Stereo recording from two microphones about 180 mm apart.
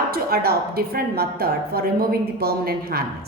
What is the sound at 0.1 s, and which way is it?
A woman's voice, 60° right (ahead or behind).